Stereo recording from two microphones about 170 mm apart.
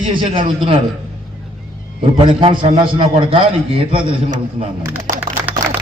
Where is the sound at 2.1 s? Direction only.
30° right (ahead or behind).